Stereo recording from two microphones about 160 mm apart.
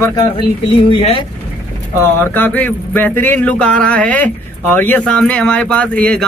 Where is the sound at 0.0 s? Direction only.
25° left (ahead or behind).